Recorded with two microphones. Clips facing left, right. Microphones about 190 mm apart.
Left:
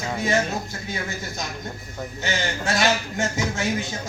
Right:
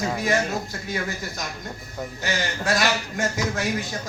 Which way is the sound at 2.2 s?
25° left (ahead or behind).